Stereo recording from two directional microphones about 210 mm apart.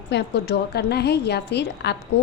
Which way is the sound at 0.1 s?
55° left (ahead or behind).